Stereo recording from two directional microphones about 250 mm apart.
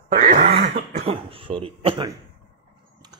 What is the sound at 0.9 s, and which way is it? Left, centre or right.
A man's voice, right.